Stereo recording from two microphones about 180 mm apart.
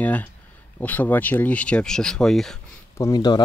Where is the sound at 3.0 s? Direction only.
20° left (ahead or behind).